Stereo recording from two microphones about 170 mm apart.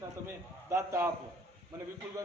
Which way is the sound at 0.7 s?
15° right (ahead or behind).